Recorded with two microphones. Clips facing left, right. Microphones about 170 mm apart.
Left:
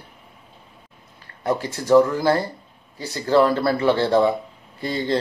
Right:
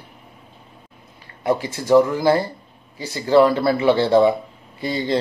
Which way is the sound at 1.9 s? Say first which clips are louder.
Right 1 dB; 15° right (ahead or behind).